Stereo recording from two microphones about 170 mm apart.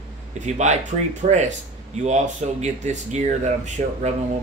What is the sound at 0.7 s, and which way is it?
Speech, 45° right (ahead or behind).